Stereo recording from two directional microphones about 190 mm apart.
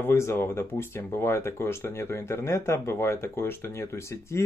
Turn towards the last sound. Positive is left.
turn(degrees=15)  # may be behind; listen again after turning